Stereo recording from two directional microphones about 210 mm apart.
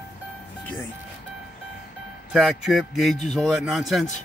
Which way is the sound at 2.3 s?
Centre (ahead or behind).